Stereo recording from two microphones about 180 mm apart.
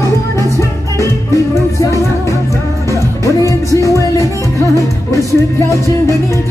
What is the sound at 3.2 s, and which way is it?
Music, 15° left (ahead or behind).